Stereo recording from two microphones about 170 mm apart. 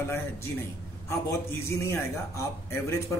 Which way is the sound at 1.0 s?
15° left (ahead or behind).